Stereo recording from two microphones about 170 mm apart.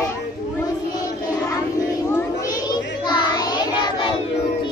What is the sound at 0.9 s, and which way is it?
Child singing, 20° left (ahead or behind).